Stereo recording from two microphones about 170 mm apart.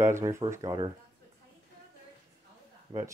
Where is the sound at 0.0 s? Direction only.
15° right (ahead or behind).